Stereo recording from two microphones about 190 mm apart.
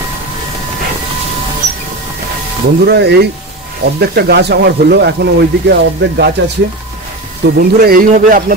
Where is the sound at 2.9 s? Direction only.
60° right (ahead or behind).